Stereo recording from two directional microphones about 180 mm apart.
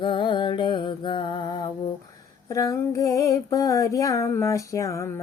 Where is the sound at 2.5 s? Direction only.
20° left (ahead or behind).